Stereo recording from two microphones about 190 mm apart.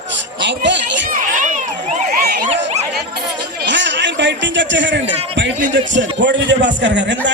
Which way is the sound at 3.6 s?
70° right (ahead or behind).